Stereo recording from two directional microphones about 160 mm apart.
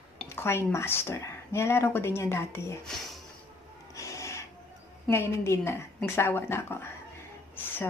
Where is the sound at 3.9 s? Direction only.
20° left (ahead or behind).